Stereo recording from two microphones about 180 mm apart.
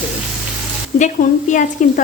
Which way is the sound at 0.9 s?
45° left (ahead or behind).